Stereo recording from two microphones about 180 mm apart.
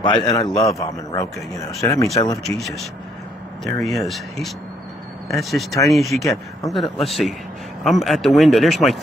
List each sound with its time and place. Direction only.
0.0 s a man's voice: 25° left (ahead or behind)
2.4 s speech: centre (ahead or behind)